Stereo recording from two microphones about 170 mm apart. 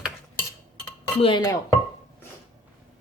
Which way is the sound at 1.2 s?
30° left (ahead or behind).